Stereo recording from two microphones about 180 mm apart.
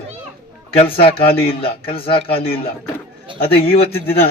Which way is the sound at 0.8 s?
30° left (ahead or behind).